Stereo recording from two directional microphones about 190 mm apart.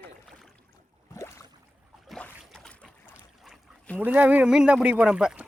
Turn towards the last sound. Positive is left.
turn(degrees=-5)  # may be behind; listen again after turning